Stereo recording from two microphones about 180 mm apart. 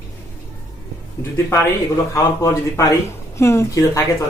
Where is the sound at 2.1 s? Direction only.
15° left (ahead or behind).